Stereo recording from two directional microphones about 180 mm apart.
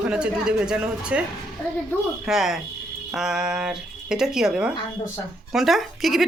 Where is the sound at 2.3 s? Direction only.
Centre (ahead or behind).